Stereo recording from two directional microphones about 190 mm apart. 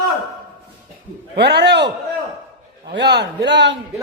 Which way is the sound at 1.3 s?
60° right (ahead or behind).